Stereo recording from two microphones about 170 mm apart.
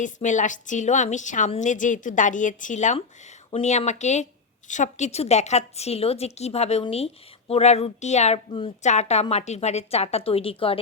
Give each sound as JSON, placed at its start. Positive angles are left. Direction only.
{"t": 0.0, "sound": "a woman's voice", "side_deg": 45}
{"t": 8.8, "sound": "a woman's voice", "side_deg": 45}